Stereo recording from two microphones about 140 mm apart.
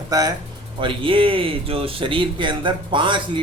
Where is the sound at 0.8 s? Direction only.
35° right (ahead or behind).